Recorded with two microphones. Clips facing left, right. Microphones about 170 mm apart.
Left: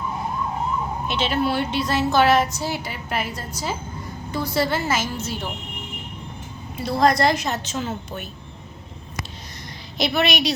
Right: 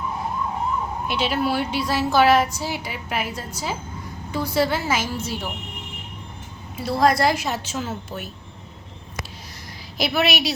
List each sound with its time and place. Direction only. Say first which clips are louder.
1.0 s a woman's voice: even; 10° right (ahead or behind)
6.7 s a woman's voice: even; 5° right (ahead or behind)
10.0 s a woman's voice: left 1 dB; 5° right (ahead or behind)